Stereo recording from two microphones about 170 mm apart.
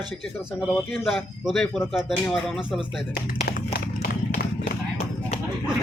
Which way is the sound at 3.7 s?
60° left (ahead or behind).